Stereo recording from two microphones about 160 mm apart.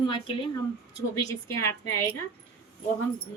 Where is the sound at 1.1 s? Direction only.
20° left (ahead or behind).